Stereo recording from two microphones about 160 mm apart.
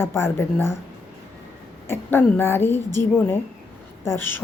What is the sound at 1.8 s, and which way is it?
Speech, 15° left (ahead or behind).